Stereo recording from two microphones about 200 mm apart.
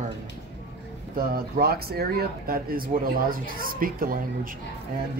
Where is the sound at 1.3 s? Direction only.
50° right (ahead or behind).